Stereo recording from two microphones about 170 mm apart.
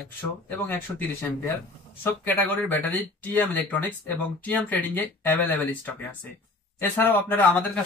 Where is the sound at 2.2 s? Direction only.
10° left (ahead or behind).